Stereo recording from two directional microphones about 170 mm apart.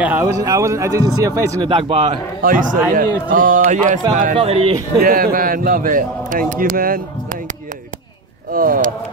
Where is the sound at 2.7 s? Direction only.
55° right (ahead or behind).